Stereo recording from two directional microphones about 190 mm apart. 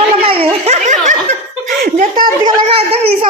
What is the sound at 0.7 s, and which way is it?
Snicker, 40° right (ahead or behind).